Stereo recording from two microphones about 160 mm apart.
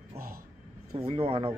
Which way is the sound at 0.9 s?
40° right (ahead or behind).